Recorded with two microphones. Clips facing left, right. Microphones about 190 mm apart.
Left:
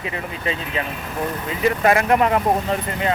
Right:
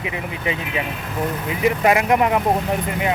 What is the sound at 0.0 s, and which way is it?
Speech, 15° right (ahead or behind).